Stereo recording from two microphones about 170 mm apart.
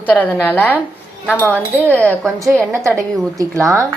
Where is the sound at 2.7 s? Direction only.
15° right (ahead or behind).